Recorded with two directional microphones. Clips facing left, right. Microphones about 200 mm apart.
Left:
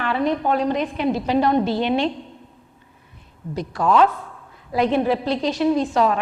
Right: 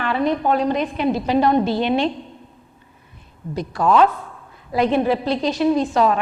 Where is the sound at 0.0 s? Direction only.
10° right (ahead or behind).